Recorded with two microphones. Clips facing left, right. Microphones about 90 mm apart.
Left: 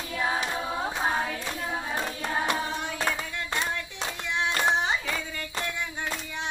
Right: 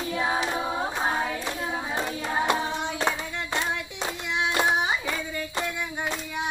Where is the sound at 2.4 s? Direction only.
20° right (ahead or behind).